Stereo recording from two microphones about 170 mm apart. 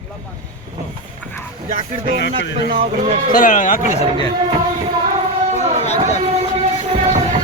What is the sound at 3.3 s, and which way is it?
Speech, 50° left (ahead or behind).